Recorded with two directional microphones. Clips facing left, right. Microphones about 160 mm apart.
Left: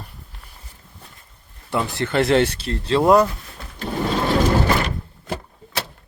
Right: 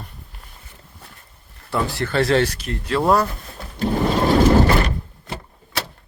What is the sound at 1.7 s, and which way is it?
Speech, 20° left (ahead or behind).